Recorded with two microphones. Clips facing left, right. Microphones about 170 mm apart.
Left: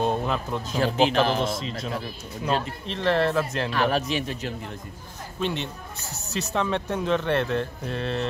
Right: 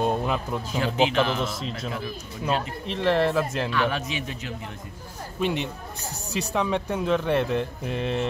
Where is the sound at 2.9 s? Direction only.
10° right (ahead or behind).